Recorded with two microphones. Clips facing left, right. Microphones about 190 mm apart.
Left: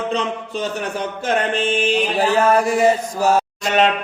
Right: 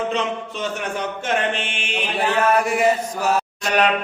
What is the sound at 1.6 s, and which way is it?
Mantra, 35° left (ahead or behind).